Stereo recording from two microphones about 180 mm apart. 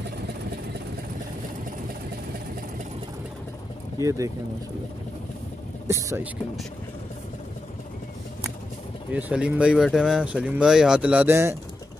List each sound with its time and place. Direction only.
4.0 s speech: 15° right (ahead or behind)
5.9 s speech: 15° right (ahead or behind)
9.1 s speech: 5° right (ahead or behind)